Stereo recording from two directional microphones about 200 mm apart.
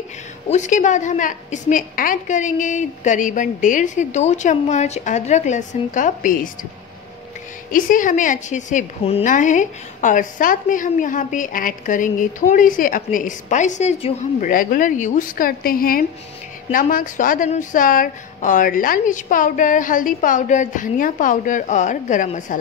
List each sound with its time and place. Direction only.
0.5 s a woman's voice: 40° left (ahead or behind)
7.7 s a woman's voice: 40° left (ahead or behind)